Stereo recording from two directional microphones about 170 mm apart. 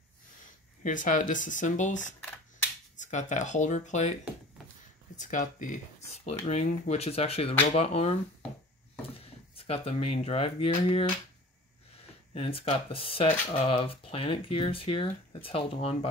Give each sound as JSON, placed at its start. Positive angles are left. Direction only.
{"t": 0.8, "sound": "speech", "side_deg": 50}
{"t": 5.1, "sound": "speech", "side_deg": 45}
{"t": 9.6, "sound": "speech", "side_deg": 35}
{"t": 12.4, "sound": "speech", "side_deg": 35}